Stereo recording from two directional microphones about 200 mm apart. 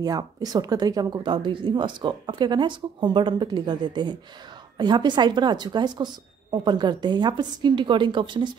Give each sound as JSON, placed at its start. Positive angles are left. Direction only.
{"t": 0.0, "sound": "speech", "side_deg": -20}